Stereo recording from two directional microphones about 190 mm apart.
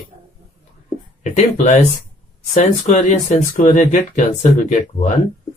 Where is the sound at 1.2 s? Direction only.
40° left (ahead or behind).